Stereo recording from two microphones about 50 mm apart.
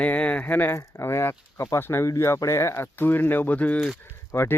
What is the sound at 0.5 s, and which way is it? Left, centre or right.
Speech, left.